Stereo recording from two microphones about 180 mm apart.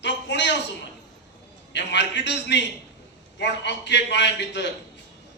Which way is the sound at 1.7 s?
75° left (ahead or behind).